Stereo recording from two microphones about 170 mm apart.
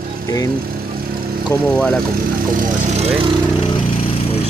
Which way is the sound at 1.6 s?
5° left (ahead or behind).